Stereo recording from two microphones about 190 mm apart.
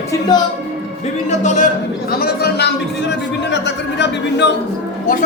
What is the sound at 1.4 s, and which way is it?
Speech, 40° left (ahead or behind).